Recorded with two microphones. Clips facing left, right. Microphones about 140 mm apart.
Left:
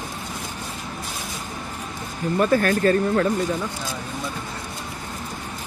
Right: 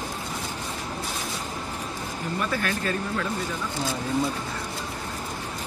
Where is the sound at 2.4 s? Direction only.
45° left (ahead or behind).